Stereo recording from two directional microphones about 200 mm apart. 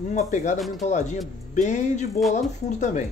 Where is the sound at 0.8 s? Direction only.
35° left (ahead or behind).